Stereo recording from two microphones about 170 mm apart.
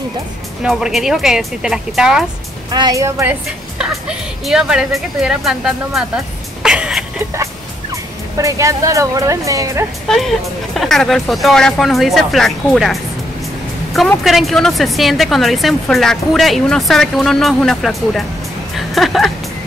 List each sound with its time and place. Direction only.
0.7 s a woman's voice: 5° right (ahead or behind)
2.7 s a woman's voice: 20° right (ahead or behind); by 7.1 s 5° right (ahead or behind)
7.9 s speech: 20° right (ahead or behind)
10.0 s a woman's voice: centre (ahead or behind)
18.8 s music: centre (ahead or behind)